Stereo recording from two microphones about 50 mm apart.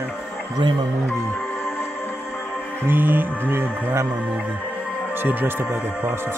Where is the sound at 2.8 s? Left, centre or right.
Right.